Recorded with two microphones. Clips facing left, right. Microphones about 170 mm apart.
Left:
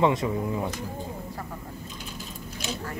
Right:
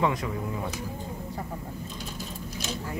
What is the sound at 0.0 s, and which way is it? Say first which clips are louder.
Speech: left 4 dB; 25° left (ahead or behind).